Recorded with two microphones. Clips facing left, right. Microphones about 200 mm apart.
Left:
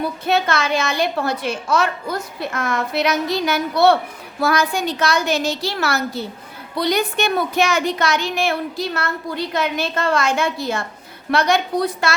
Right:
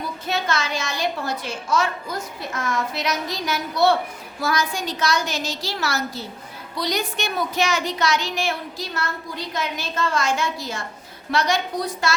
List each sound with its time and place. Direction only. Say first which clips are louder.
0.3 s speech: left 6 dB; 60° left (ahead or behind)